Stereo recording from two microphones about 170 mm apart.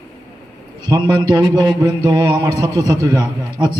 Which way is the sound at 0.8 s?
25° right (ahead or behind).